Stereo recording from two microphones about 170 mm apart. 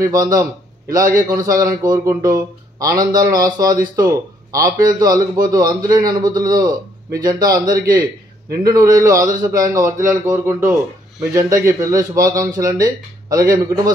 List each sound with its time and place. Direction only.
0.0 s a man's voice: 20° right (ahead or behind)
8.6 s a man's voice: 20° right (ahead or behind)